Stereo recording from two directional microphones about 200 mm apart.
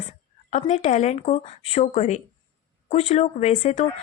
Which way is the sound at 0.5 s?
35° left (ahead or behind).